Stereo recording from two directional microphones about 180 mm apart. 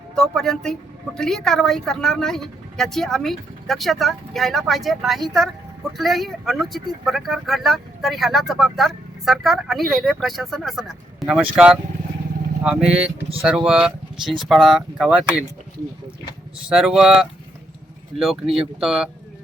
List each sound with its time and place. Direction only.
0.2 s speech: 5° left (ahead or behind)
12.6 s speech: 5° right (ahead or behind)
16.6 s speech: 5° right (ahead or behind)